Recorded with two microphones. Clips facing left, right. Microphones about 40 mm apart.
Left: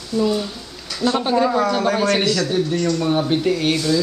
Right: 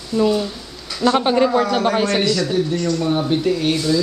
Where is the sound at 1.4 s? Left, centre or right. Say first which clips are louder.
Right 1 dB; right.